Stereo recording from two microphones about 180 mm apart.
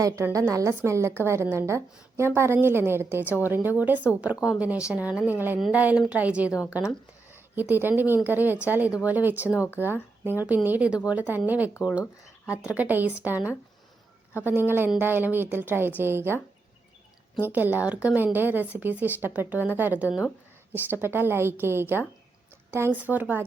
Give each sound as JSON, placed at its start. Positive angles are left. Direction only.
{"t": 0.0, "sound": "speech", "side_deg": -15}
{"t": 14.7, "sound": "speech", "side_deg": -10}
{"t": 17.4, "sound": "speech", "side_deg": -10}